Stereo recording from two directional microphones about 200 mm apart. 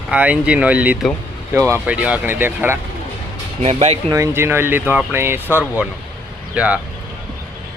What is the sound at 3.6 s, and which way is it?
Speech, 30° right (ahead or behind).